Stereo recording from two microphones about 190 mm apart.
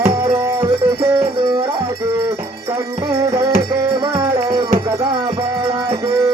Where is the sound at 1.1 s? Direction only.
20° right (ahead or behind).